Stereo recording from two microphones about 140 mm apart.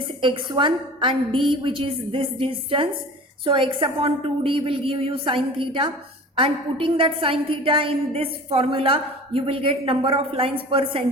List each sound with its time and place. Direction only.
0.2 s a woman's voice: 35° right (ahead or behind)